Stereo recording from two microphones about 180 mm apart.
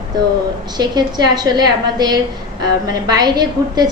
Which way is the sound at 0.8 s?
20° right (ahead or behind).